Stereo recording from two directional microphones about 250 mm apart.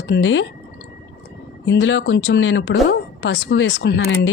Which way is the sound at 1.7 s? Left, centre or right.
Left.